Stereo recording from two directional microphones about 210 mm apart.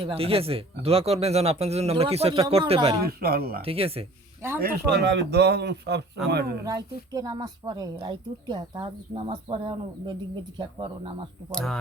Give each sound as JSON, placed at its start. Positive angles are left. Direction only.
{"t": 0.0, "sound": "speech", "side_deg": -25}
{"t": 3.0, "sound": "a man's voice", "side_deg": -45}
{"t": 3.6, "sound": "speech", "side_deg": -25}
{"t": 4.6, "sound": "a man's voice", "side_deg": -50}
{"t": 6.7, "sound": "speech", "side_deg": -15}
{"t": 11.5, "sound": "speech", "side_deg": 0}